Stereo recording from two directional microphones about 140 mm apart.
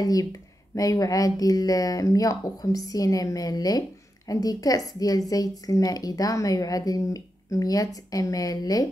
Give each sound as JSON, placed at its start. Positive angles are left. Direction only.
{"t": 0.0, "sound": "a woman's voice", "side_deg": 25}